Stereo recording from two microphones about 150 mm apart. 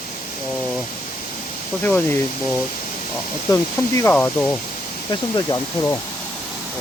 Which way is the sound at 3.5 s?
20° left (ahead or behind).